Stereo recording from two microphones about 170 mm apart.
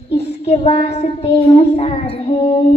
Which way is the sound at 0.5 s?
35° left (ahead or behind).